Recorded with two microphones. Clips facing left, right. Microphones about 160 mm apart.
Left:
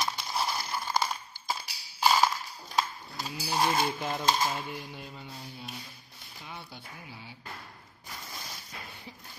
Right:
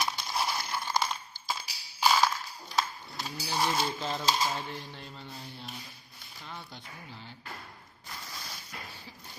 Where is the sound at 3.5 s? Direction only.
50° left (ahead or behind).